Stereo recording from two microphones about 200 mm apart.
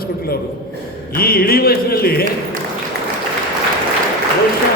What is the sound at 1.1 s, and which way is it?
A man's voice, 50° left (ahead or behind).